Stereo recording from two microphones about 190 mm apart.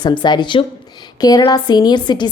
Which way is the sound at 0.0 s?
25° left (ahead or behind).